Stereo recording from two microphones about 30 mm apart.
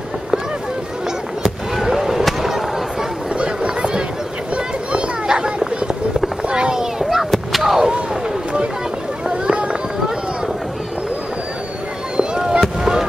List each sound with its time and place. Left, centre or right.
1.8 s fireworks: centre
3.3 s a sound: right
4.9 s children playing: right
6.5 s children playing: right
7.6 s artillery fire: centre
9.5 s a sound: right
12.2 s fireworks: right